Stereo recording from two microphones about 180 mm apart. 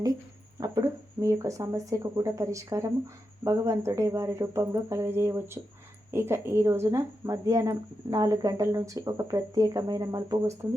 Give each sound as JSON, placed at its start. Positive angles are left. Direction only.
{"t": 0.6, "sound": "a woman's voice", "side_deg": -20}